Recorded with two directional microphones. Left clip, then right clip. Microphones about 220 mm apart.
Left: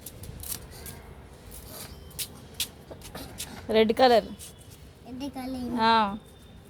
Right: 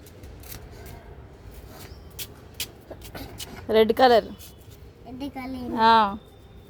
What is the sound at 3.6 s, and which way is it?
A woman's voice, 10° right (ahead or behind).